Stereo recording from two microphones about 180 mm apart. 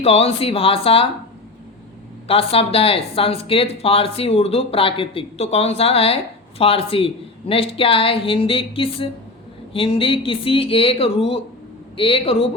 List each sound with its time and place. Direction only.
0.0 s speech: 35° left (ahead or behind)
2.2 s speech: 30° left (ahead or behind)